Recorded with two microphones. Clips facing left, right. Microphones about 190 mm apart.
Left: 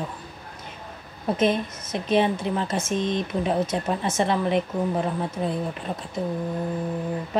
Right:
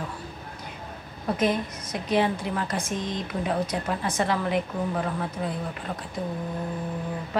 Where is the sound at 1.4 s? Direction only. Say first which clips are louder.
Left 3 dB; 25° left (ahead or behind).